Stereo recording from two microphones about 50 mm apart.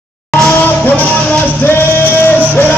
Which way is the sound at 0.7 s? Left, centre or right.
Left.